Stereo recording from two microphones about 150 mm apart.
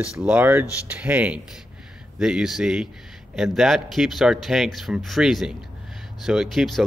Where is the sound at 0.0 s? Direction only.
10° right (ahead or behind).